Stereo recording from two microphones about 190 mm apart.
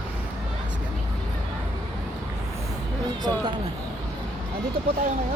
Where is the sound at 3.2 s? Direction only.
20° right (ahead or behind).